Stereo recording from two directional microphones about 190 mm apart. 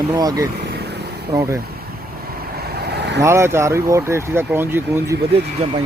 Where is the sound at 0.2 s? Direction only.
20° right (ahead or behind).